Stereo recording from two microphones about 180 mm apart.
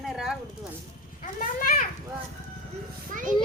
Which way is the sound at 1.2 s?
50° left (ahead or behind).